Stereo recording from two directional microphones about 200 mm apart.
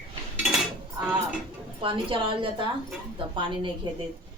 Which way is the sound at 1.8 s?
25° right (ahead or behind).